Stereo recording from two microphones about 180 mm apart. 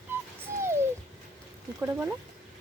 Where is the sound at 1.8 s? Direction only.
10° right (ahead or behind).